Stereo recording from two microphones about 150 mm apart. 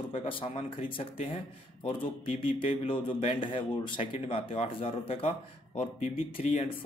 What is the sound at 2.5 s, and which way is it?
Speech, 35° left (ahead or behind).